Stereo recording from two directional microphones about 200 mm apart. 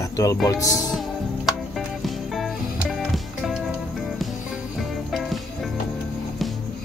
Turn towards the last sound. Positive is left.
turn(degrees=0)  # may be behind; listen again after turning